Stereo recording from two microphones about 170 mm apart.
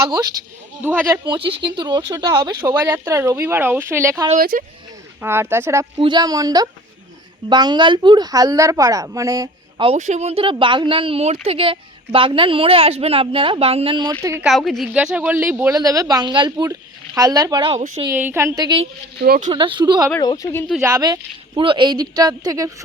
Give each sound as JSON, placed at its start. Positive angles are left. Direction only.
{"t": 0.0, "sound": "speech", "side_deg": -20}
{"t": 4.4, "sound": "speech", "side_deg": -55}
{"t": 5.2, "sound": "speech", "side_deg": -15}
{"t": 6.0, "sound": "speech", "side_deg": -25}
{"t": 10.0, "sound": "speech", "side_deg": -40}
{"t": 14.4, "sound": "a woman's voice", "side_deg": 0}
{"t": 18.0, "sound": "speech", "side_deg": -15}
{"t": 19.2, "sound": "speech", "side_deg": -65}
{"t": 19.5, "sound": "speech", "side_deg": -30}
{"t": 20.2, "sound": "speech", "side_deg": 20}
{"t": 20.8, "sound": "speech", "side_deg": -20}